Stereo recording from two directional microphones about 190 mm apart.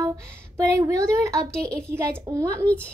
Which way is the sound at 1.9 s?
15° right (ahead or behind).